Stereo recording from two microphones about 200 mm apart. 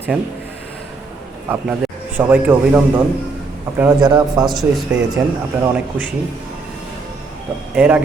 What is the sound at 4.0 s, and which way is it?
Speech, 20° right (ahead or behind).